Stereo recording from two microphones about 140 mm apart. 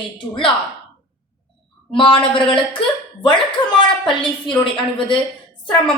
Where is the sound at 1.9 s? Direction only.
35° left (ahead or behind).